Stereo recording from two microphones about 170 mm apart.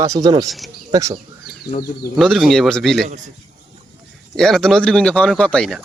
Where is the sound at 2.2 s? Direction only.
Centre (ahead or behind).